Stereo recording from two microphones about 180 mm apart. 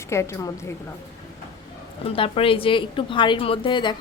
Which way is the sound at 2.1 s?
30° left (ahead or behind).